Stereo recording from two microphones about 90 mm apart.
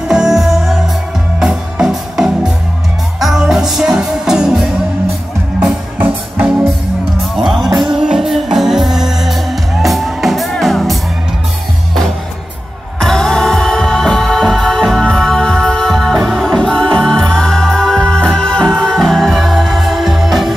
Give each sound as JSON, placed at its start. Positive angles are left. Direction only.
{"t": 0.1, "sound": "music", "side_deg": -5}
{"t": 5.9, "sound": "music", "side_deg": -20}
{"t": 7.3, "sound": "music", "side_deg": -5}
{"t": 13.0, "sound": "music", "side_deg": 5}